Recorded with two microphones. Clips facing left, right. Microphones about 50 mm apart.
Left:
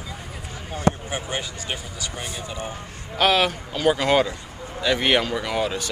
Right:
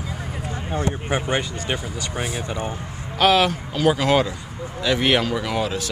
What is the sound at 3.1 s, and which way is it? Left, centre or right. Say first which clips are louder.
Speech: right 2 dB; centre.